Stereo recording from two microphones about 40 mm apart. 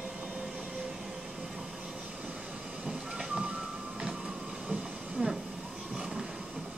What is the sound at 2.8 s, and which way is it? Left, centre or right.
Train, centre.